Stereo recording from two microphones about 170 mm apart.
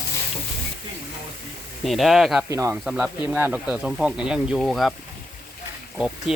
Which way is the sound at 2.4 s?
15° right (ahead or behind).